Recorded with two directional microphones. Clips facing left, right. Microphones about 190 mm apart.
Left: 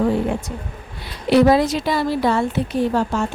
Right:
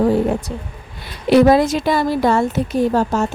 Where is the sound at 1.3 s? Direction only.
50° right (ahead or behind).